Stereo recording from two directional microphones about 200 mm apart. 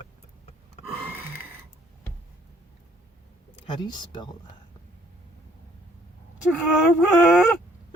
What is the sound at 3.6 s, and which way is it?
Speech, 20° left (ahead or behind).